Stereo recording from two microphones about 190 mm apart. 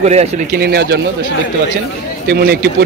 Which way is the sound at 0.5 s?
55° right (ahead or behind).